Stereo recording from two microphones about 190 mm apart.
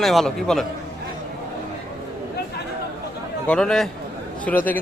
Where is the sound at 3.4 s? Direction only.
5° left (ahead or behind).